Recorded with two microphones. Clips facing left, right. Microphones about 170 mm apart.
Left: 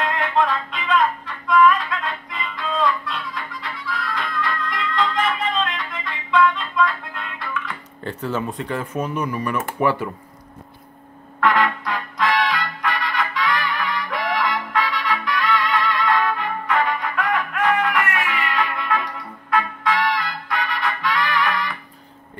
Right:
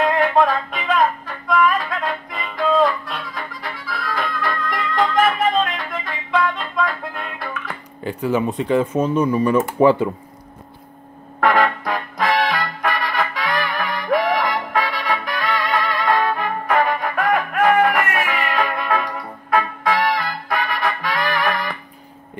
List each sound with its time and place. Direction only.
0.0 s music: 50° right (ahead or behind)
8.0 s speech: 10° right (ahead or behind); by 10.0 s 25° right (ahead or behind)
11.3 s music: 50° right (ahead or behind)